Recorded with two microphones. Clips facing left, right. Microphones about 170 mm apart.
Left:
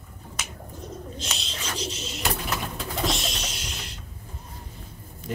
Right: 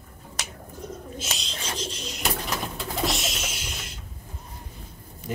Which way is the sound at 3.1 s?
Centre (ahead or behind).